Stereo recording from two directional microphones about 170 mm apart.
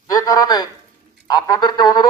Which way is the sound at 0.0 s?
20° left (ahead or behind).